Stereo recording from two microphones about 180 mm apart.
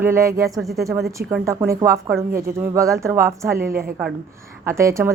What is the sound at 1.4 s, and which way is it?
A woman's voice, 15° right (ahead or behind).